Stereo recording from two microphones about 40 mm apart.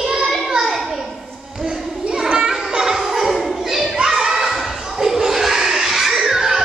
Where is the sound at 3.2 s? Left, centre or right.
Centre.